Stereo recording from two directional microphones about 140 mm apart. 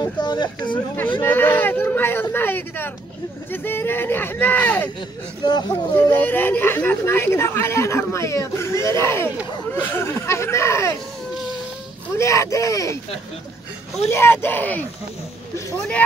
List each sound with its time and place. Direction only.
0.0 s speech: 30° left (ahead or behind)
1.2 s a woman's voice: 15° left (ahead or behind)
5.4 s speech: 35° left (ahead or behind)
5.9 s a woman's voice: 15° left (ahead or behind)
12.2 s speech: 20° left (ahead or behind)
14.0 s a woman's voice: 20° left (ahead or behind)